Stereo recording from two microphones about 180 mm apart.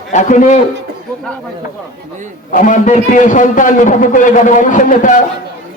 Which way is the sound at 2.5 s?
45° left (ahead or behind).